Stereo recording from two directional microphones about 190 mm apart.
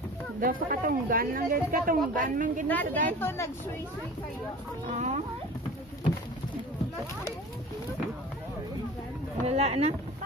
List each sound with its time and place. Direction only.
0.4 s speech: 50° right (ahead or behind)
2.7 s speech: 10° left (ahead or behind)
4.9 s speech: 40° right (ahead or behind)
9.5 s speech: 35° right (ahead or behind)